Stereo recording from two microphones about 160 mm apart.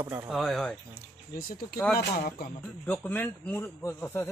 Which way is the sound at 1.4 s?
70° left (ahead or behind).